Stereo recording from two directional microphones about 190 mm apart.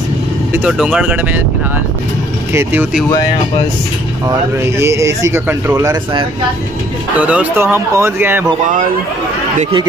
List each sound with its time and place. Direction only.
0.5 s speech: 5° right (ahead or behind)
2.5 s speech: 10° right (ahead or behind)
4.3 s speech: 15° right (ahead or behind)
7.2 s speech: 5° right (ahead or behind)
9.6 s speech: 25° right (ahead or behind)